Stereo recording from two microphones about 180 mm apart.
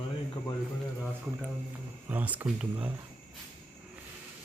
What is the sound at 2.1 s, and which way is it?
Speech, 10° right (ahead or behind).